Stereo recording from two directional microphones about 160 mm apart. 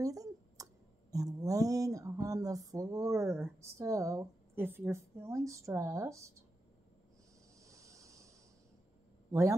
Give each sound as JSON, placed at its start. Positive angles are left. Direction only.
{"t": 0.0, "sound": "clicking", "side_deg": -20}
{"t": 1.1, "sound": "a sound", "side_deg": -20}
{"t": 7.6, "sound": "snake", "side_deg": -20}
{"t": 9.3, "sound": "speech", "side_deg": -20}